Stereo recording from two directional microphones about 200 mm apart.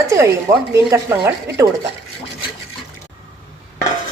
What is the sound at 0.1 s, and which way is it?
A woman's voice, 15° right (ahead or behind).